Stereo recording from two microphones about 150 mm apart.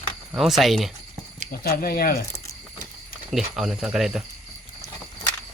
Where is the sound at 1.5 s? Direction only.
90° left.